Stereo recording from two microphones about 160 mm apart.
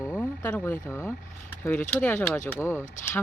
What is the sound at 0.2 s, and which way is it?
Speech, 10° left (ahead or behind).